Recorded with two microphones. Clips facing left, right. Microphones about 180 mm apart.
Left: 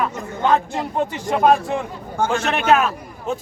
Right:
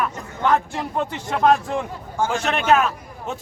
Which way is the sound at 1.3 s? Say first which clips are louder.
Left 2 dB; 10° left (ahead or behind).